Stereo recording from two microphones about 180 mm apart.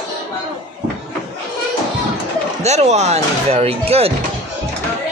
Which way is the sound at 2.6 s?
40° right (ahead or behind).